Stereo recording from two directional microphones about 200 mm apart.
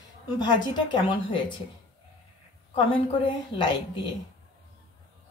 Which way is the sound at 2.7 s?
25° left (ahead or behind).